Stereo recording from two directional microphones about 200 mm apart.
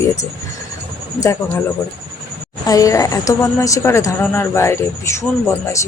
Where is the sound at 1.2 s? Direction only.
15° left (ahead or behind).